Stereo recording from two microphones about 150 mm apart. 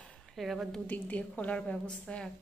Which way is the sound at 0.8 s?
10° left (ahead or behind).